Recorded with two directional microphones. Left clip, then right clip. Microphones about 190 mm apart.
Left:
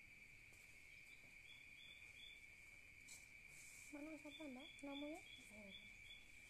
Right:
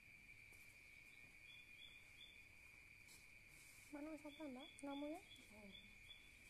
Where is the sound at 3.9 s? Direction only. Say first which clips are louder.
Right 2 dB; 20° right (ahead or behind).